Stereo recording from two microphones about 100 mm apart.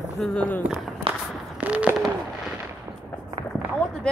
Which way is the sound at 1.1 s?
60° right (ahead or behind).